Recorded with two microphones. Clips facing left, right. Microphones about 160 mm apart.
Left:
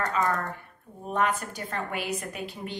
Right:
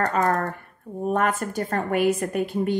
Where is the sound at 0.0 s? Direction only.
50° right (ahead or behind).